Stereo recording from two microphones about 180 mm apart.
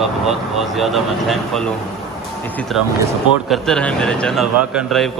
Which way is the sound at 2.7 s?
Centre (ahead or behind).